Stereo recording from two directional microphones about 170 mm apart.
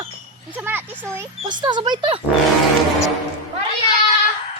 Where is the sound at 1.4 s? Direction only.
25° right (ahead or behind).